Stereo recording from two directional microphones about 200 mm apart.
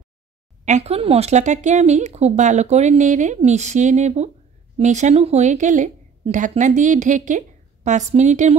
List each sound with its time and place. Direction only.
0.7 s speech: 35° right (ahead or behind)